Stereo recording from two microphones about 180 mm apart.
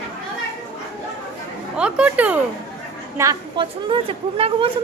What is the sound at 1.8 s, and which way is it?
Speech, 5° right (ahead or behind).